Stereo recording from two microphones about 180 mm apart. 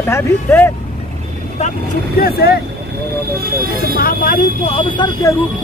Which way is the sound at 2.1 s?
60° left (ahead or behind).